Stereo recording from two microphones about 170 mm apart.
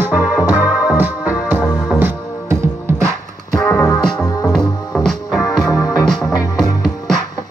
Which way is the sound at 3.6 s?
15° left (ahead or behind).